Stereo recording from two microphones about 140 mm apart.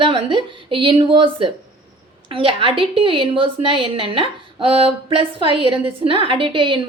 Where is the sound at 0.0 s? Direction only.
35° right (ahead or behind).